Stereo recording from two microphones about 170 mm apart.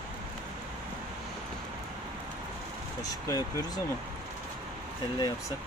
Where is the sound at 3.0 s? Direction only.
20° left (ahead or behind).